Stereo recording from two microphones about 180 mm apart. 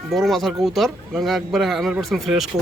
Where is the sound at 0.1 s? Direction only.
Centre (ahead or behind).